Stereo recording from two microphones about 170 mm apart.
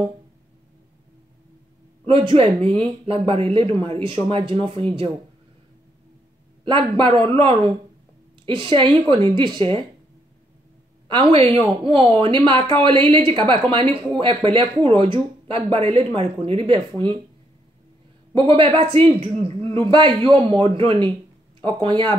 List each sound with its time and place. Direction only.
2.0 s speech: 30° right (ahead or behind)
6.6 s speech: 30° right (ahead or behind)
11.1 s speech: 30° right (ahead or behind)
18.3 s speech: 30° right (ahead or behind)